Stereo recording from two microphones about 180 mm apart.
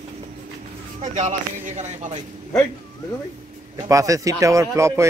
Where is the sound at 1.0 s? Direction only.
40° right (ahead or behind).